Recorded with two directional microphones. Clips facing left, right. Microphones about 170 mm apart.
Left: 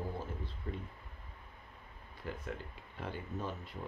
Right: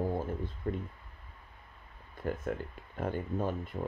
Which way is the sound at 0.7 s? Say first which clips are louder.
Right 8 dB; 50° right (ahead or behind).